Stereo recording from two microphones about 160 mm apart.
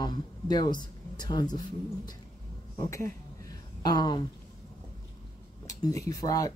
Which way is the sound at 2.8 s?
20° left (ahead or behind).